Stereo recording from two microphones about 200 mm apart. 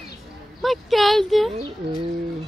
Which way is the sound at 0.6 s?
Centre (ahead or behind).